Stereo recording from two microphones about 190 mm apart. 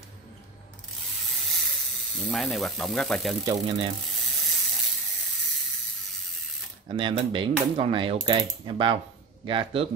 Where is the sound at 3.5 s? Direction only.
30° right (ahead or behind).